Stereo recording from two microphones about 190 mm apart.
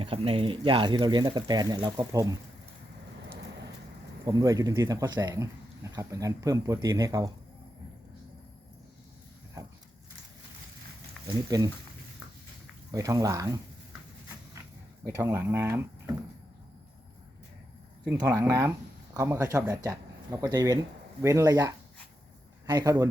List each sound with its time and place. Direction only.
0.0 s speech: 30° right (ahead or behind)
4.3 s speech: 20° right (ahead or behind)
9.6 s a sound: 20° right (ahead or behind)
11.3 s speech: 20° right (ahead or behind)
12.9 s speech: 20° right (ahead or behind)
15.0 s speech: 15° right (ahead or behind)
18.1 s a man's voice: 15° right (ahead or behind)